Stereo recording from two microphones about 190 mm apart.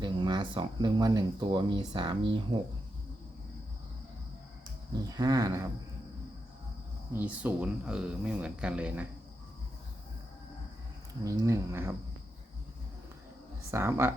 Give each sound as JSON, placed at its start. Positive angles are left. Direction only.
{"t": 0.0, "sound": "speech", "side_deg": -25}
{"t": 5.0, "sound": "speech", "side_deg": -20}
{"t": 7.1, "sound": "speech", "side_deg": -10}
{"t": 11.2, "sound": "speech", "side_deg": -15}
{"t": 13.7, "sound": "speech", "side_deg": -15}